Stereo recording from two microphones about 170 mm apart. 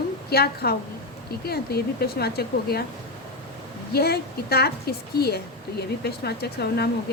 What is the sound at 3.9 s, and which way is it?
A woman's voice, 70° left (ahead or behind).